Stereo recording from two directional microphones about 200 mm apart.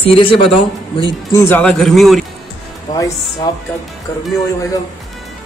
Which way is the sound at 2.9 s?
20° left (ahead or behind).